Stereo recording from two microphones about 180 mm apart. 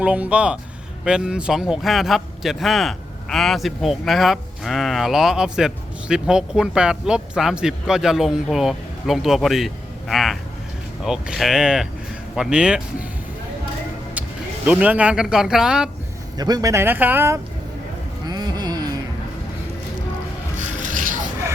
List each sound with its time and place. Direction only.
0.0 s a man's voice: 5° right (ahead or behind)
14.2 s speech: 5° right (ahead or behind)
16.4 s speech: 20° right (ahead or behind)
18.3 s music: 20° right (ahead or behind)
20.6 s music: 45° right (ahead or behind)